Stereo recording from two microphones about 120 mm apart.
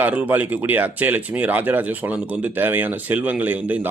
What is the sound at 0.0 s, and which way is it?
Speech, 15° right (ahead or behind).